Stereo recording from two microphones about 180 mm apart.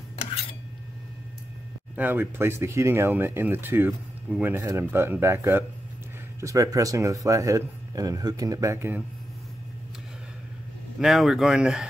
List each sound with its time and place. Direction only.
2.0 s speech: 10° right (ahead or behind)
11.0 s speech: centre (ahead or behind)